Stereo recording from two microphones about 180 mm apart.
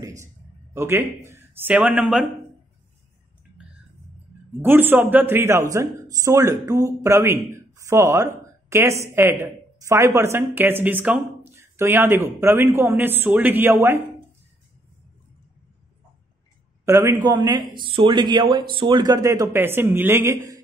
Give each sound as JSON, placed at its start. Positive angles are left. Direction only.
{"t": 0.7, "sound": "speech", "side_deg": -15}
{"t": 4.6, "sound": "speech", "side_deg": -10}
{"t": 16.8, "sound": "a man's voice", "side_deg": -15}